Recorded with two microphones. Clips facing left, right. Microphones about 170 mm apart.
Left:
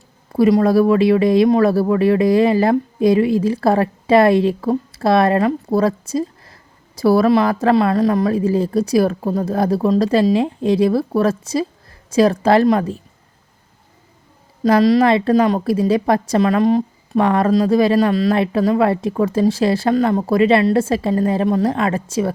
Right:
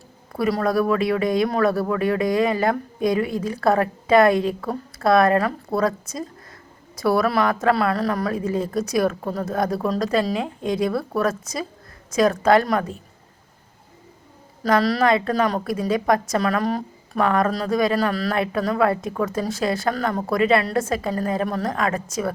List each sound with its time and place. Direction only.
0.3 s speech: 25° left (ahead or behind)
14.6 s speech: 20° left (ahead or behind)